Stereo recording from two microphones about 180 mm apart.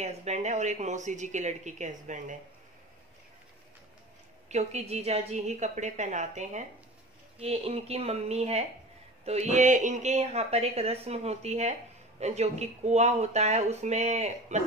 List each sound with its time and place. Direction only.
0.0 s a woman's voice: 40° right (ahead or behind)
4.5 s a woman's voice: 40° right (ahead or behind)